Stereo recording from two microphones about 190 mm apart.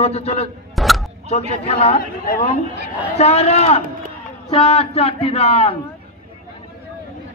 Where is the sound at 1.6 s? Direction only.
30° left (ahead or behind).